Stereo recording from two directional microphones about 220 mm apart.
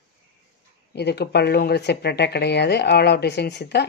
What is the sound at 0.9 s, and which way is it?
A woman's voice, 50° left (ahead or behind).